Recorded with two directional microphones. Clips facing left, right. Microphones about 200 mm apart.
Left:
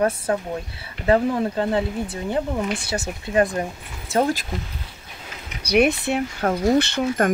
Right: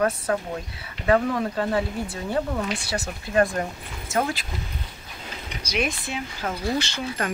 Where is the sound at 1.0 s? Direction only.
25° left (ahead or behind).